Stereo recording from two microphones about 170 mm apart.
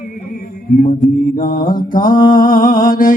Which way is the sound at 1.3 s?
50° left (ahead or behind).